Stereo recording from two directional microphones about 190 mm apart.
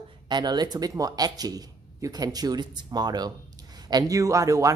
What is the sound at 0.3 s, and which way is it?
Speech, 20° right (ahead or behind).